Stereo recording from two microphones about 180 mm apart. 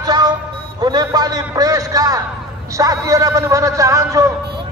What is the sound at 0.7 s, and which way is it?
A man's voice, 25° right (ahead or behind).